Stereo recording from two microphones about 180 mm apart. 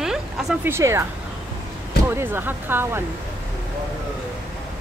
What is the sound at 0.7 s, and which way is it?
Speech, 15° right (ahead or behind).